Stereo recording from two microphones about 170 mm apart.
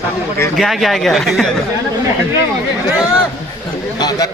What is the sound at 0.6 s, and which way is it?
Speech, centre (ahead or behind).